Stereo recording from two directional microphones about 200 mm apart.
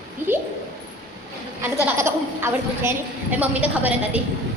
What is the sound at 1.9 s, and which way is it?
A woman's voice, 10° right (ahead or behind).